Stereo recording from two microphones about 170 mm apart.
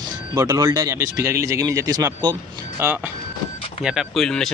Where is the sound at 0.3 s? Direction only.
20° right (ahead or behind).